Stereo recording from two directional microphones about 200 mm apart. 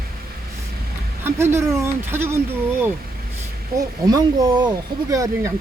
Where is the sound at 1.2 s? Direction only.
15° right (ahead or behind).